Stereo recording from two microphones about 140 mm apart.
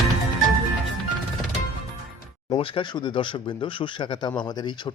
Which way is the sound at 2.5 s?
40° left (ahead or behind).